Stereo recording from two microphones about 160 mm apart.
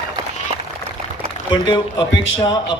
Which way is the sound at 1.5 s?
30° left (ahead or behind).